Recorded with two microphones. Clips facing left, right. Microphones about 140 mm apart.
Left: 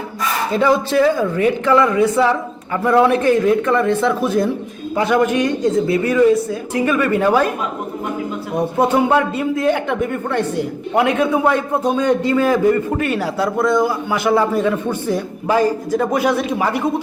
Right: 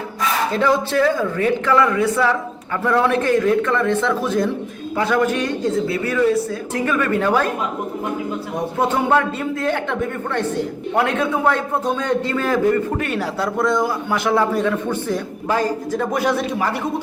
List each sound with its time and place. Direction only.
0.5 s a man's voice: 15° left (ahead or behind)
8.5 s a man's voice: 10° left (ahead or behind)